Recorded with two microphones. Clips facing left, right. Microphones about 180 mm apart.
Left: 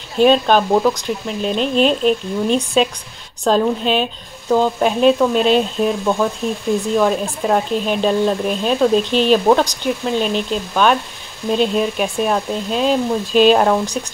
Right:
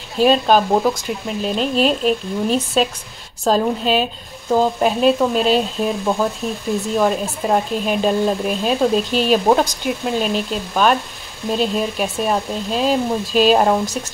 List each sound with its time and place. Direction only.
0.2 s speech: 5° right (ahead or behind)